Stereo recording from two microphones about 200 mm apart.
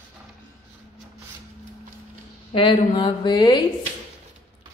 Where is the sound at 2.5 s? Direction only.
25° left (ahead or behind).